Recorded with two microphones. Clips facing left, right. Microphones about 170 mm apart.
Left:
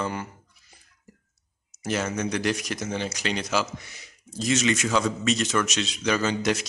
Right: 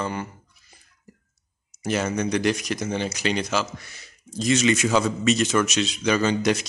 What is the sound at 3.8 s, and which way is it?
Speech, 15° left (ahead or behind).